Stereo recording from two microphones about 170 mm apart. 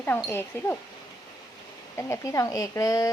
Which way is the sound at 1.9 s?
15° left (ahead or behind).